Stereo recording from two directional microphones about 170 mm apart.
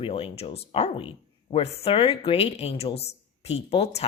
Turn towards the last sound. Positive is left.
turn(degrees=35)  # may be behind; listen again after turning